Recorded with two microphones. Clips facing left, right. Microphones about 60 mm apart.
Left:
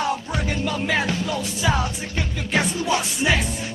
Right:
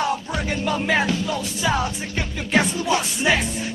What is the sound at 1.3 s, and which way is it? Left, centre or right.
Music, centre.